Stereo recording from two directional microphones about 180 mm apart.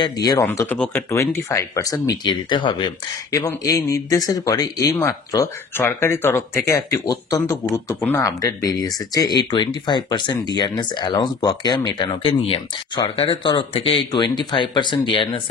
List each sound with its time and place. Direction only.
0.0 s speech: 20° left (ahead or behind)
0.5 s speech: 10° left (ahead or behind); by 15.4 s 25° left (ahead or behind)